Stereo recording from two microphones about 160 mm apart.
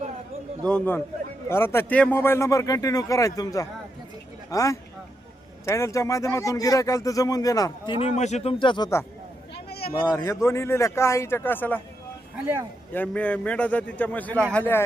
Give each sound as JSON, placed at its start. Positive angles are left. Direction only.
{"t": 0.6, "sound": "speech", "side_deg": 10}
{"t": 7.9, "sound": "speech", "side_deg": 45}
{"t": 9.6, "sound": "a sound", "side_deg": 80}
{"t": 10.1, "sound": "speech", "side_deg": 20}
{"t": 12.9, "sound": "speech", "side_deg": 10}